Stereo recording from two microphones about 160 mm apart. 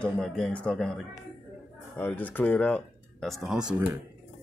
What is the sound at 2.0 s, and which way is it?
Speech, 10° left (ahead or behind).